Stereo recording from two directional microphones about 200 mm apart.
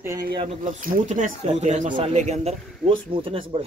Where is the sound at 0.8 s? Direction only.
40° right (ahead or behind).